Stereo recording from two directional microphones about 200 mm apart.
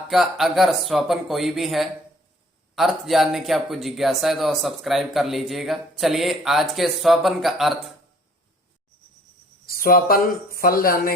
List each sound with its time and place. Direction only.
0.1 s speech: centre (ahead or behind)
9.6 s speech: 45° left (ahead or behind)